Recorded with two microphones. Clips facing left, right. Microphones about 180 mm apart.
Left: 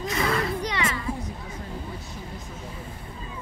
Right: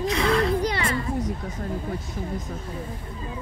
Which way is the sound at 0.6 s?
35° right (ahead or behind).